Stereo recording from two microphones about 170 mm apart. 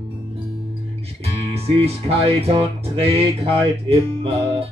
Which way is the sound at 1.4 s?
35° right (ahead or behind).